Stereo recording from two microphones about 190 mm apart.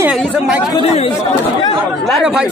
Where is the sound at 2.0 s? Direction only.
Centre (ahead or behind).